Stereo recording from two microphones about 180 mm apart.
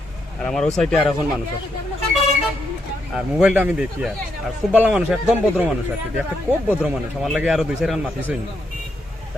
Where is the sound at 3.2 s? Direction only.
5° right (ahead or behind).